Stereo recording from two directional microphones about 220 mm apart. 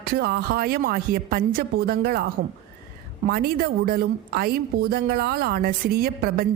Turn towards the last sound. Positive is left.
turn(degrees=-45)  # may be behind; listen again after turning